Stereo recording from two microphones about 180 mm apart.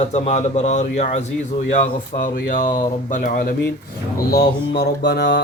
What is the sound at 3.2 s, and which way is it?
Speech, 50° left (ahead or behind).